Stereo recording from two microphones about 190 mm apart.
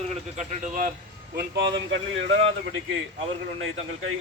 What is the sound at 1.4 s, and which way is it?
Speech, 70° right (ahead or behind).